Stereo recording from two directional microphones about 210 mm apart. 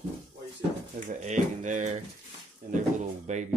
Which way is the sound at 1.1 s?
35° right (ahead or behind).